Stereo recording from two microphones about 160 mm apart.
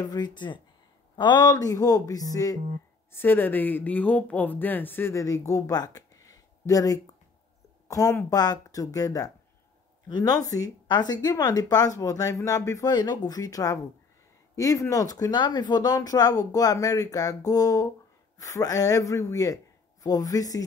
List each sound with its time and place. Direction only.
0.0 s speech: 25° left (ahead or behind)